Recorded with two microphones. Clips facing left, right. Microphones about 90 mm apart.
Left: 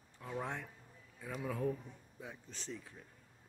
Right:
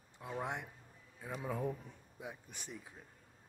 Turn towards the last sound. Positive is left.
turn(degrees=-15)  # may be behind; listen again after turning